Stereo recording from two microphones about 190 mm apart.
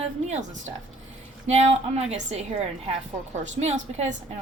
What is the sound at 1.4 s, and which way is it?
Speech, 35° right (ahead or behind).